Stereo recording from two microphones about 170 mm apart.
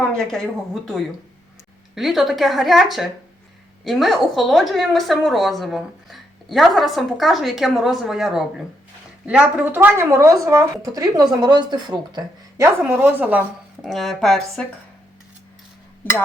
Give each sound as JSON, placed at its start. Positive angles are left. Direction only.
{"t": 0.1, "sound": "a woman's voice", "side_deg": 5}
{"t": 12.8, "sound": "speech", "side_deg": -10}
{"t": 13.8, "sound": "a woman's voice", "side_deg": 0}